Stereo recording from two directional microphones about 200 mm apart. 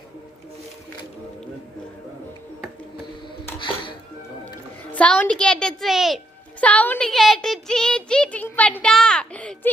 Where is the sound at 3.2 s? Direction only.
25° left (ahead or behind).